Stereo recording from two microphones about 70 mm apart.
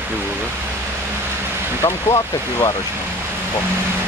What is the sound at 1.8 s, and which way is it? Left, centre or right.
Speech, left.